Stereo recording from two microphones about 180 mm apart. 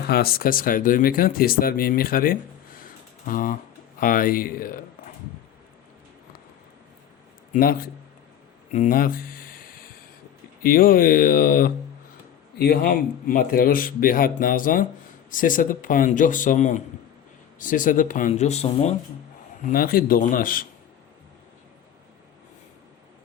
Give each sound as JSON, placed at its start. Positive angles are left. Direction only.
{"t": 0.1, "sound": "speech", "side_deg": 55}
{"t": 7.5, "sound": "speech", "side_deg": 55}
{"t": 10.6, "sound": "speech", "side_deg": 55}
{"t": 19.7, "sound": "speech", "side_deg": 55}